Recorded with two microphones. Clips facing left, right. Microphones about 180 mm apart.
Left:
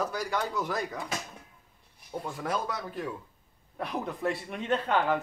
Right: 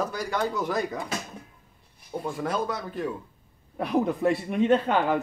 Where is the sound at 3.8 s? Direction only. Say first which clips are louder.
Right 9 dB; 10° right (ahead or behind).